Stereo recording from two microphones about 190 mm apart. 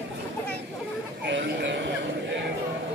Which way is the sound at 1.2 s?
65° right (ahead or behind).